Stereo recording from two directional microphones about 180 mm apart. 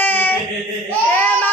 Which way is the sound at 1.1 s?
10° left (ahead or behind).